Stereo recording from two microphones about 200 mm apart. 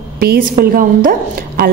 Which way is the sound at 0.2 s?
50° right (ahead or behind).